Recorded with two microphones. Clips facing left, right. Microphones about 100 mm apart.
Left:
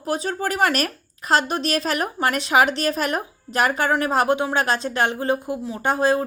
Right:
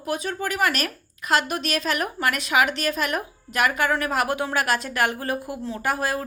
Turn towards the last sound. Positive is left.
turn(degrees=25)  # may be behind; listen again after turning